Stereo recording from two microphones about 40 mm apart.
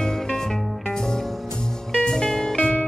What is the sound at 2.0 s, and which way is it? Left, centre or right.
Music, centre.